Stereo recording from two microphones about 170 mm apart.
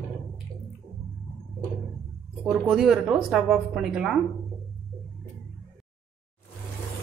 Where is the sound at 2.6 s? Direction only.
Centre (ahead or behind).